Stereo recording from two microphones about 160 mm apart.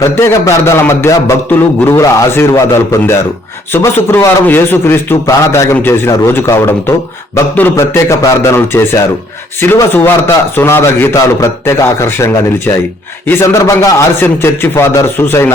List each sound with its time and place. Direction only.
0.0 s a man's voice: 15° left (ahead or behind)